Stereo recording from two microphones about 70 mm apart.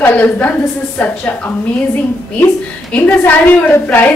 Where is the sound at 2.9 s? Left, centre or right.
Left.